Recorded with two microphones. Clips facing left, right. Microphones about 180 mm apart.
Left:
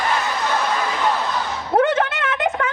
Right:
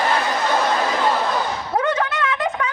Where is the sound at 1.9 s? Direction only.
25° left (ahead or behind).